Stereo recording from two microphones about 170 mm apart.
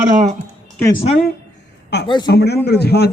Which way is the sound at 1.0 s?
40° left (ahead or behind).